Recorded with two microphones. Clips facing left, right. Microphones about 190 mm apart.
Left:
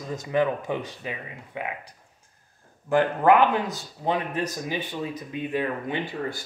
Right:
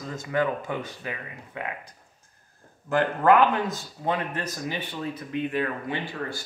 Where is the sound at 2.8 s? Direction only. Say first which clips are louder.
Left 1 dB; 15° left (ahead or behind).